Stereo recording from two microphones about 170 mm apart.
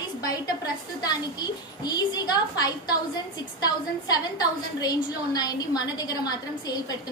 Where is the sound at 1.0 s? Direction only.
25° left (ahead or behind).